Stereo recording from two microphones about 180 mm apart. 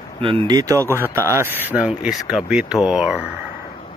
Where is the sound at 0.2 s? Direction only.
30° right (ahead or behind).